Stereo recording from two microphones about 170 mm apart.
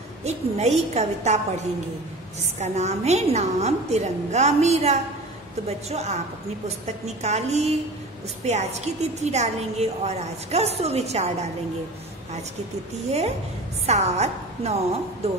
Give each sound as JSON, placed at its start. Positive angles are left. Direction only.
{"t": 0.2, "sound": "a woman's voice", "side_deg": -40}
{"t": 2.6, "sound": "a woman's voice", "side_deg": -40}
{"t": 13.8, "sound": "a woman's voice", "side_deg": -40}